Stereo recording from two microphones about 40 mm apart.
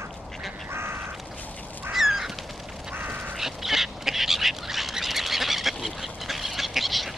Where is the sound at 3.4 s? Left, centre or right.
Centre.